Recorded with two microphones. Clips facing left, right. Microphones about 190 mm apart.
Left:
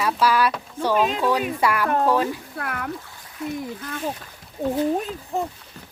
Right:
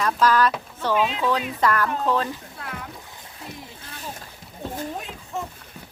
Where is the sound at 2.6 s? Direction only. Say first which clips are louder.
Left 6 dB; 65° left (ahead or behind).